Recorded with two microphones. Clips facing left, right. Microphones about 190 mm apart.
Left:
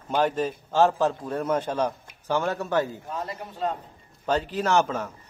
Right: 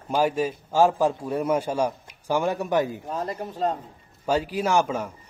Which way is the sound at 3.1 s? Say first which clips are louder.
Right 4 dB; 35° right (ahead or behind).